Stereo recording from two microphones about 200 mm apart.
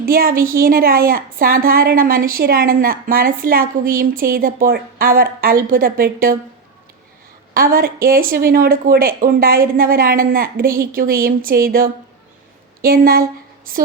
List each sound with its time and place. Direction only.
0.0 s a woman's voice: 45° right (ahead or behind)
7.5 s a woman's voice: 45° right (ahead or behind)